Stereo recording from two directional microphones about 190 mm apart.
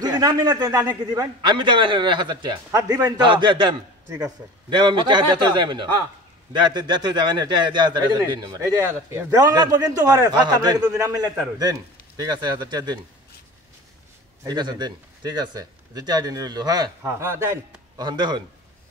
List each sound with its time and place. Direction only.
0.0 s a man's voice: 20° right (ahead or behind)
14.4 s a man's voice: 20° right (ahead or behind)